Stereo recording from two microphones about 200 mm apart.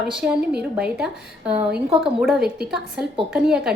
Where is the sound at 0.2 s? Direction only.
5° right (ahead or behind).